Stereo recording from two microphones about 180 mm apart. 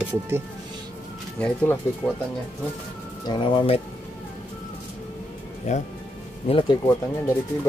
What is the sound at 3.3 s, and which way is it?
Speech, 30° left (ahead or behind).